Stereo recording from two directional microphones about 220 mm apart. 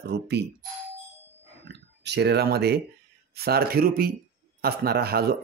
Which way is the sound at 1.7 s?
50° right (ahead or behind).